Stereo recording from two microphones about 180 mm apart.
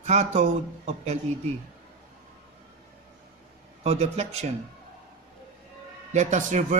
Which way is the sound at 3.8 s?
35° right (ahead or behind).